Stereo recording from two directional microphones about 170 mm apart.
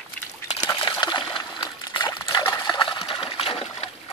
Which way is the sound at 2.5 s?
25° left (ahead or behind).